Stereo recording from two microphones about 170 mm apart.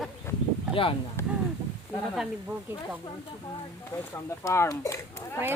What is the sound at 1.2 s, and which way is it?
Speech, 15° left (ahead or behind).